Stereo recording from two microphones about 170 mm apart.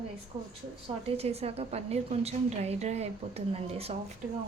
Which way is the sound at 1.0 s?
35° right (ahead or behind).